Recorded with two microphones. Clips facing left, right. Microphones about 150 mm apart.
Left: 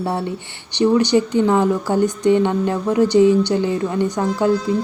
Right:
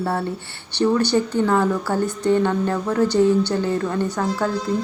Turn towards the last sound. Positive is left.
turn(degrees=15)  # may be behind; listen again after turning